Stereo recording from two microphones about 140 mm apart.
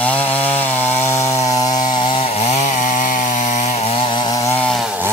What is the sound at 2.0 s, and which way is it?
Chainsaw, 40° left (ahead or behind).